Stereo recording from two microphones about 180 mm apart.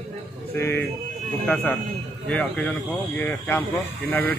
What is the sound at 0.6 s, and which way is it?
A man's voice, 10° left (ahead or behind).